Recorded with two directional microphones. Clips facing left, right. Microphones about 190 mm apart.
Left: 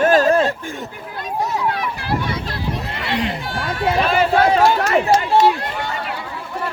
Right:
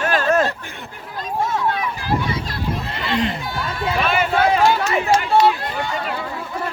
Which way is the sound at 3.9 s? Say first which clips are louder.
Left 2 dB; 35° left (ahead or behind).